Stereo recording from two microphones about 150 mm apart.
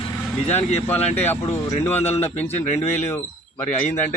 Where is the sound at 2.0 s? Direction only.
45° left (ahead or behind).